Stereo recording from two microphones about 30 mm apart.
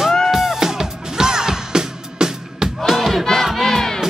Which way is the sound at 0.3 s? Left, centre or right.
Centre.